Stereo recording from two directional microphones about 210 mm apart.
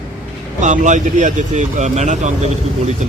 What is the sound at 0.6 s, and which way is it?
Speech, 35° right (ahead or behind).